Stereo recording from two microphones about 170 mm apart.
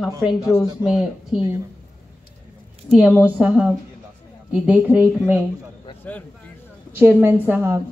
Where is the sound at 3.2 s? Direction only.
5° right (ahead or behind).